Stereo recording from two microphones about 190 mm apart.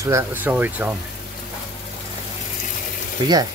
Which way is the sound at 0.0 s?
15° right (ahead or behind).